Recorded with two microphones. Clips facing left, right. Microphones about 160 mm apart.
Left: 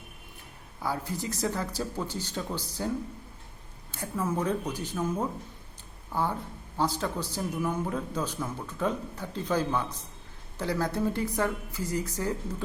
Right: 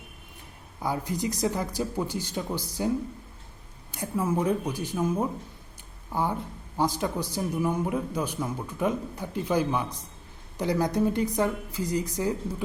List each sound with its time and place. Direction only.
0.8 s a man's voice: 15° right (ahead or behind)
3.9 s a man's voice: 15° right (ahead or behind)